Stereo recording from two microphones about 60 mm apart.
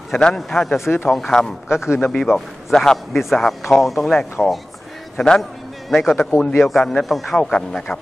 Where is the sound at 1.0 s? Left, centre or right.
Centre.